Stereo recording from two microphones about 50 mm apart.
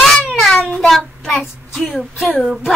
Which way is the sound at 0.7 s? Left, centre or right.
Centre.